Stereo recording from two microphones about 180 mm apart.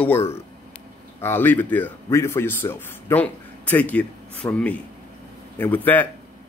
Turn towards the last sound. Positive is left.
turn(degrees=10)  # may be behind; listen again after turning